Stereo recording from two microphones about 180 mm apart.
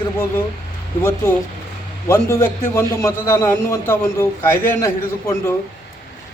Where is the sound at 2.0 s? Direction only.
15° left (ahead or behind).